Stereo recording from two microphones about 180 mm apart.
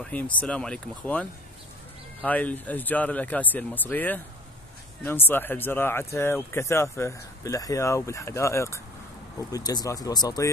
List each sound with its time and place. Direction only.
0.0 s speech: 10° left (ahead or behind)
2.2 s speech: 10° left (ahead or behind)